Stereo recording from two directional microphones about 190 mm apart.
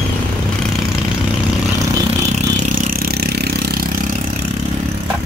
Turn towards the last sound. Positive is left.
turn(degrees=-60)  # may be behind; listen again after turning